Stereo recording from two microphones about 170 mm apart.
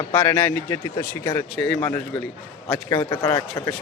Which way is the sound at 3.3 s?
20° left (ahead or behind).